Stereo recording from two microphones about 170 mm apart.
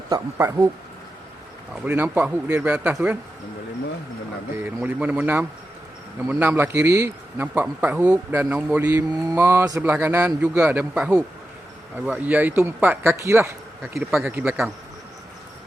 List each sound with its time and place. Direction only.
0.1 s speech: 15° right (ahead or behind)
1.7 s speech: 10° right (ahead or behind)
4.6 s speech: 10° right (ahead or behind)
14.1 s a man's voice: centre (ahead or behind)